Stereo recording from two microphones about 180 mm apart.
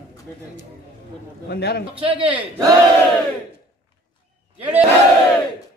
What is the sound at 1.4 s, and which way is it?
Speech, 65° left (ahead or behind).